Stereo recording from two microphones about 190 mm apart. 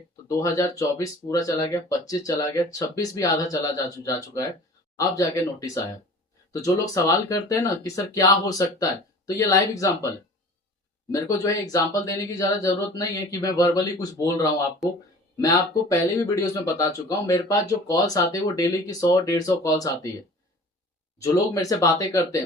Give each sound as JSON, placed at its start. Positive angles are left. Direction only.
{"t": 0.3, "sound": "speech", "side_deg": 15}
{"t": 11.1, "sound": "speech", "side_deg": 20}
{"t": 21.2, "sound": "speech", "side_deg": 15}